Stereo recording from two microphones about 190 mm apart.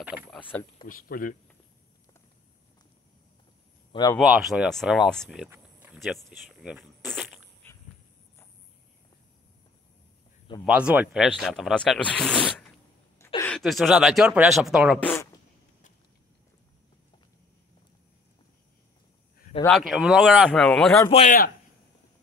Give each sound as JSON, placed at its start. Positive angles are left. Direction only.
{"t": 0.0, "sound": "speech", "side_deg": -5}
{"t": 0.4, "sound": "speech", "side_deg": 10}
{"t": 0.8, "sound": "speech", "side_deg": 50}
{"t": 3.9, "sound": "speech", "side_deg": 20}
{"t": 4.2, "sound": "speech", "side_deg": 0}
{"t": 5.5, "sound": "a sound", "side_deg": -10}
{"t": 10.6, "sound": "speech", "side_deg": -5}
{"t": 19.6, "sound": "speech", "side_deg": 0}
{"t": 21.1, "sound": "a man's voice", "side_deg": 35}